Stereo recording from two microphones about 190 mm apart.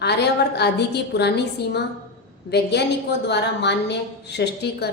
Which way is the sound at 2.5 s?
60° left (ahead or behind).